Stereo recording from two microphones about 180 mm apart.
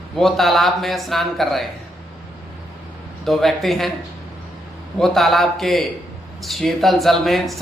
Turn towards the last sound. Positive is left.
turn(degrees=0)  # may be behind; listen again after turning